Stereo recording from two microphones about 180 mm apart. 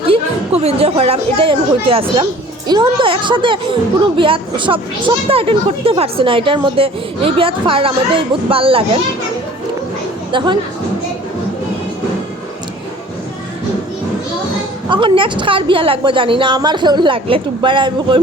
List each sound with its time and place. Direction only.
0.0 s a woman's voice: 35° right (ahead or behind)
10.3 s a woman's voice: 25° right (ahead or behind)
14.8 s a woman's voice: 25° right (ahead or behind)